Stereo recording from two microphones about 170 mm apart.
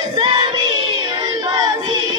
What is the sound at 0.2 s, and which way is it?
Child singing, 25° right (ahead or behind).